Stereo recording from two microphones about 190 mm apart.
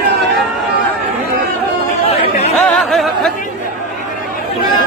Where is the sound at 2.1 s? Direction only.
35° left (ahead or behind).